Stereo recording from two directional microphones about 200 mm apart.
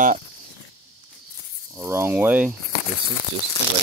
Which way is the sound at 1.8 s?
10° right (ahead or behind).